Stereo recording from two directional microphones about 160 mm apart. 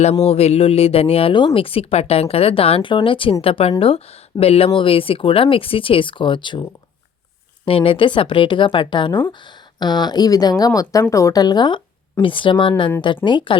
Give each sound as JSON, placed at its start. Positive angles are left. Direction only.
{"t": 0.0, "sound": "speech", "side_deg": 40}